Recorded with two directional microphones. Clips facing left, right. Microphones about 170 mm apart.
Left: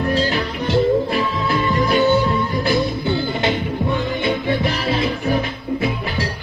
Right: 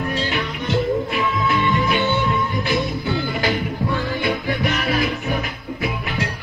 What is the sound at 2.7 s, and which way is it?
Music, 25° left (ahead or behind).